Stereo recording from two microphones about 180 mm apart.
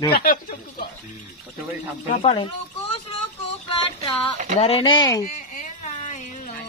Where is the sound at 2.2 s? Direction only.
30° left (ahead or behind).